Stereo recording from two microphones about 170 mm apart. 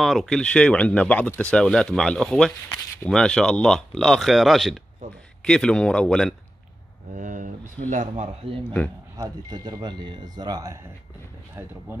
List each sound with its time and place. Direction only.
0.0 s speech: centre (ahead or behind)
7.2 s speech: 50° right (ahead or behind)
9.1 s speech: 20° right (ahead or behind)